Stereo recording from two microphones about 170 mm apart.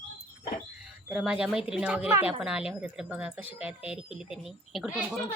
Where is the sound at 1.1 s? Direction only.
5° right (ahead or behind).